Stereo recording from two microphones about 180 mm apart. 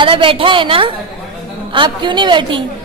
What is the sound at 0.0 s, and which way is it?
A woman's voice, 30° right (ahead or behind).